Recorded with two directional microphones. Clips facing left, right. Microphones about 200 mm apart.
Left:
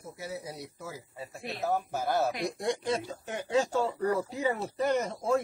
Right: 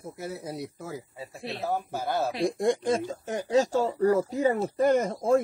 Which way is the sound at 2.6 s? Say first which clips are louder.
Right 5 dB; 50° right (ahead or behind).